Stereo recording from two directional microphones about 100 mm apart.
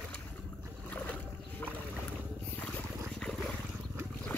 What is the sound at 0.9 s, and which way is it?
Boat, 20° left (ahead or behind).